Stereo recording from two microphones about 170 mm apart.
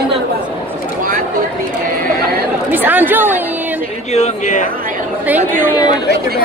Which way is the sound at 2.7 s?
10° right (ahead or behind).